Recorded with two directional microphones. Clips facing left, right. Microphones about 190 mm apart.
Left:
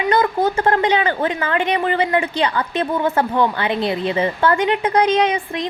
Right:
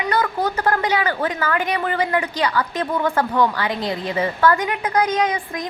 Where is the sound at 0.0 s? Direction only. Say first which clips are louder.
Left 4 dB; 25° left (ahead or behind).